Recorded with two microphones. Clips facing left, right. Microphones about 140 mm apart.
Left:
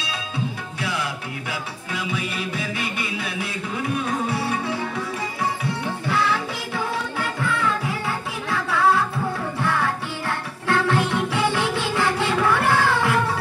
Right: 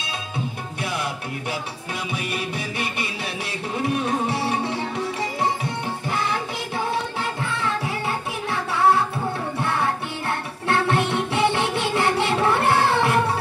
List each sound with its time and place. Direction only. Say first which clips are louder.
2.1 s music: right 1 dB; 25° right (ahead or behind)